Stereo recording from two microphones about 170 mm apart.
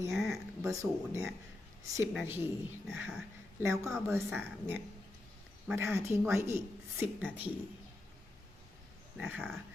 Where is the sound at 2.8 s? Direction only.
Centre (ahead or behind).